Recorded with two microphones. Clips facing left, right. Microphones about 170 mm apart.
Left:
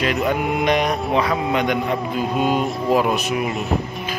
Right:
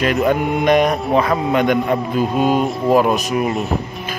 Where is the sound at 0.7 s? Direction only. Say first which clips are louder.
Right 7 dB; 50° right (ahead or behind).